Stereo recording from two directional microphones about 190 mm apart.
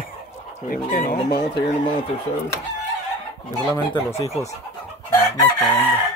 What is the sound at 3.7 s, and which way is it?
Speech, 15° left (ahead or behind).